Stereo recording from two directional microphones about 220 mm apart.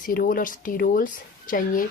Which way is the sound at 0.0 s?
40° left (ahead or behind).